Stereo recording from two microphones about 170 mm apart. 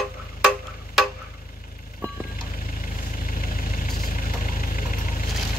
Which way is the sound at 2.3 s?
55° left (ahead or behind).